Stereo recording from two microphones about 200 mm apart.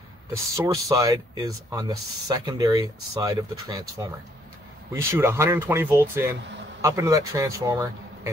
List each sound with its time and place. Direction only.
0.6 s speech: 15° right (ahead or behind)